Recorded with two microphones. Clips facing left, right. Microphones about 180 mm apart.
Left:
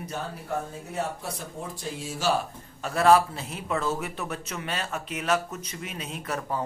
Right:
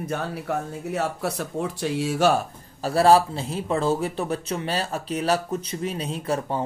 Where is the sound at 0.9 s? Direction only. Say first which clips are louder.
Right 9 dB; 75° right (ahead or behind).